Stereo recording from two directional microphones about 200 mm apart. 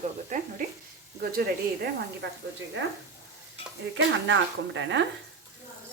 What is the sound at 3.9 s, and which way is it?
Speech, 65° right (ahead or behind).